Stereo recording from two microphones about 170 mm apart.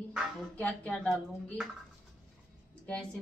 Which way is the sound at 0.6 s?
5° left (ahead or behind).